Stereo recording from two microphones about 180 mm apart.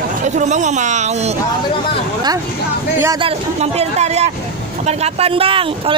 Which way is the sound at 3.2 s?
35° right (ahead or behind).